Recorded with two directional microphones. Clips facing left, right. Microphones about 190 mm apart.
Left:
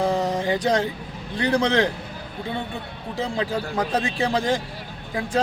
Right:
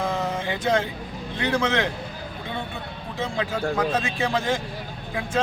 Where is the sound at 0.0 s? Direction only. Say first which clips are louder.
Left 4 dB; 35° left (ahead or behind).